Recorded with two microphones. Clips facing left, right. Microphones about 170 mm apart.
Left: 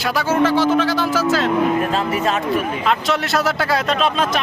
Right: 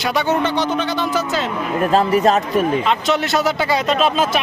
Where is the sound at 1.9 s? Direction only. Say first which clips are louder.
Right 5 dB; 40° right (ahead or behind).